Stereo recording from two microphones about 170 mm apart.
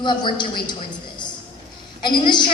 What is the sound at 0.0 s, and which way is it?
Speech, 25° left (ahead or behind).